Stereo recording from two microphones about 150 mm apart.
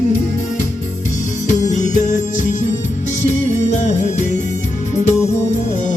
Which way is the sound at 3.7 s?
50° left (ahead or behind).